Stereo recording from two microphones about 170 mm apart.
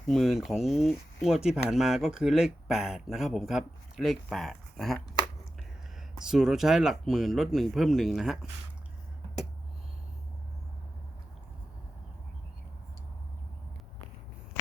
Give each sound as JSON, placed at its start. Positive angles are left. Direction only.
{"t": 0.1, "sound": "speech", "side_deg": 0}
{"t": 6.1, "sound": "speech", "side_deg": -5}